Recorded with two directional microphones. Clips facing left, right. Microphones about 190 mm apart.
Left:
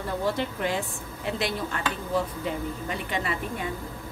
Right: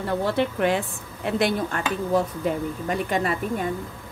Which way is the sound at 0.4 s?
65° right (ahead or behind).